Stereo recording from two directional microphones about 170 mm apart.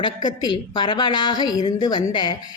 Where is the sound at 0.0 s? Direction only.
25° left (ahead or behind).